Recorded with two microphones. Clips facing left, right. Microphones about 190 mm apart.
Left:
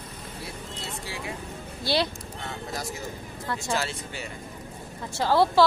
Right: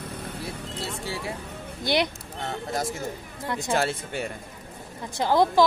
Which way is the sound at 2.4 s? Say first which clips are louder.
Right 6 dB; 50° right (ahead or behind).